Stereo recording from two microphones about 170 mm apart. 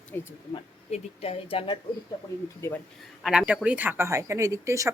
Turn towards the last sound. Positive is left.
turn(degrees=-20)  # may be behind; listen again after turning